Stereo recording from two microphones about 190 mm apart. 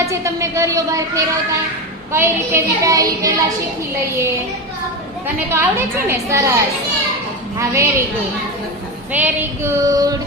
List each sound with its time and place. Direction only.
0.0 s a woman's voice: 15° right (ahead or behind)
5.5 s a woman's voice: 10° right (ahead or behind)
7.6 s a woman's voice: 15° right (ahead or behind)
9.1 s a woman's voice: 10° right (ahead or behind)